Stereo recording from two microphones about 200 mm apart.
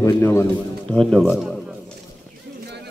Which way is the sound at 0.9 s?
Centre (ahead or behind).